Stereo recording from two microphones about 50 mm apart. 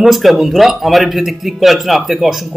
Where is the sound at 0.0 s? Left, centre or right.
Centre.